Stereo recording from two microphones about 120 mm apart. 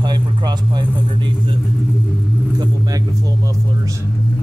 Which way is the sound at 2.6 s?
30° right (ahead or behind).